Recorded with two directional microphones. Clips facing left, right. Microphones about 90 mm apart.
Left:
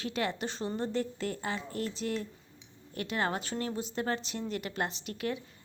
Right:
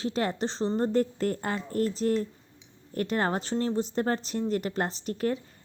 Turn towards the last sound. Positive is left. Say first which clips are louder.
# right 6 dB
turn(degrees=-40)  # may be behind; listen again after turning